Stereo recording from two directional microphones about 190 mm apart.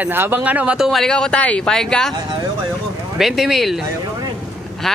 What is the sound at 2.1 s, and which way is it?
Speech, 25° right (ahead or behind).